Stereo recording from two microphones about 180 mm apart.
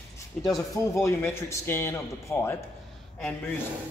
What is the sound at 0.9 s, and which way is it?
Speech, 15° left (ahead or behind).